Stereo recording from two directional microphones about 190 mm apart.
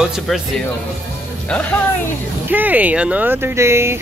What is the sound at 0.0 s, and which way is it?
Speech, centre (ahead or behind).